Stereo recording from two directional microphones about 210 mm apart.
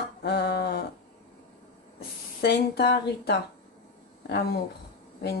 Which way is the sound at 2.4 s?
50° left (ahead or behind).